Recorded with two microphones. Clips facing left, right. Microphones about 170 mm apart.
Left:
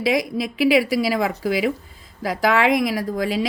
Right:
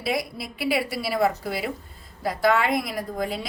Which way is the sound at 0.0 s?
90° left.